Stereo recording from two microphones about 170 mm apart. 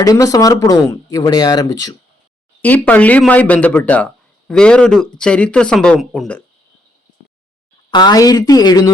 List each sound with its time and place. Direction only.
0.0 s speech: 20° left (ahead or behind)
2.6 s speech: 10° left (ahead or behind)
7.9 s speech: 25° left (ahead or behind)